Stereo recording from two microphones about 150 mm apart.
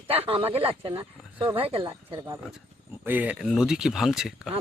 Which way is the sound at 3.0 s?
10° right (ahead or behind).